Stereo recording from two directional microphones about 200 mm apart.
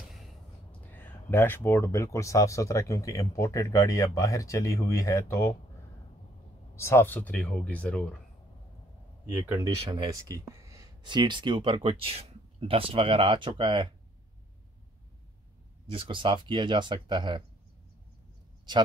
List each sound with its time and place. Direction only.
0.1 s a sound: centre (ahead or behind)
2.1 s speech: 15° left (ahead or behind)
6.7 s speech: 15° left (ahead or behind)
9.5 s speech: 20° right (ahead or behind)
15.9 s speech: 25° right (ahead or behind)